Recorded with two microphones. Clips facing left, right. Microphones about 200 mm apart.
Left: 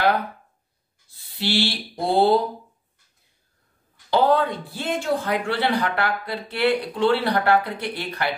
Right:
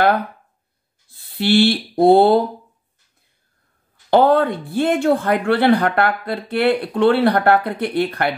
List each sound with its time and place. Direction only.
1.1 s speech: 55° right (ahead or behind)
4.1 s a woman's voice: 55° right (ahead or behind)